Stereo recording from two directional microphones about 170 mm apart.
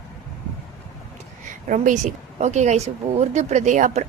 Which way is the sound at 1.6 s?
50° right (ahead or behind).